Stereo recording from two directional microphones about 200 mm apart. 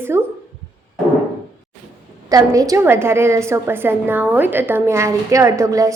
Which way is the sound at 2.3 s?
15° right (ahead or behind).